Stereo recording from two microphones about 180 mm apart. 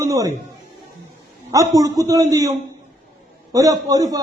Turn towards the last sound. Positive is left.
turn(degrees=-20)  # may be behind; listen again after turning